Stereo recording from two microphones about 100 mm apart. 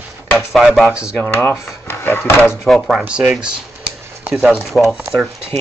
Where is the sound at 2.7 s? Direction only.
5° right (ahead or behind).